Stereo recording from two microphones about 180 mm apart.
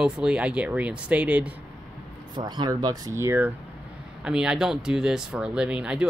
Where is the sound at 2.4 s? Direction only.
25° right (ahead or behind).